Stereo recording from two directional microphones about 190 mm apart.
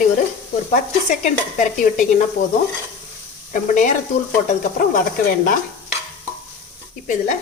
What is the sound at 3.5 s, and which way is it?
Stir, 40° left (ahead or behind).